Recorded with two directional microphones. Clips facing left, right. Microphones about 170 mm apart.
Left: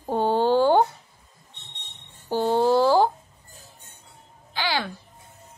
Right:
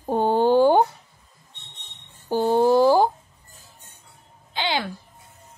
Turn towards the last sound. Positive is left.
turn(degrees=-20)  # may be behind; listen again after turning